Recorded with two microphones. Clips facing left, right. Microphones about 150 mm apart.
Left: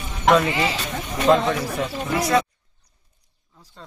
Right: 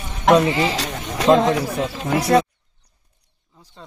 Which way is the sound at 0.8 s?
90° right.